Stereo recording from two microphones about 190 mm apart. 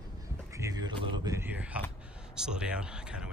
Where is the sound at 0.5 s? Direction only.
15° right (ahead or behind).